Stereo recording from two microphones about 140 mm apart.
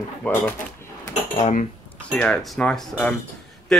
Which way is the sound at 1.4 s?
60° left (ahead or behind).